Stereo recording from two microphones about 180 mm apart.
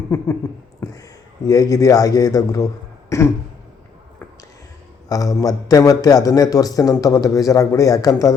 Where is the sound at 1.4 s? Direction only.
20° left (ahead or behind).